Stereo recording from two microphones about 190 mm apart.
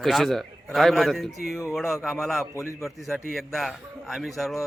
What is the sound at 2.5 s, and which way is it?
Speech, 15° left (ahead or behind).